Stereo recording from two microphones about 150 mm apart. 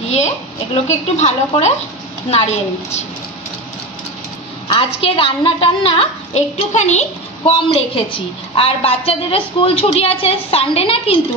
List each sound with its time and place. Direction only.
0.8 s speech: 50° left (ahead or behind)
4.6 s a woman's voice: 35° left (ahead or behind)
7.5 s a woman's voice: 35° left (ahead or behind)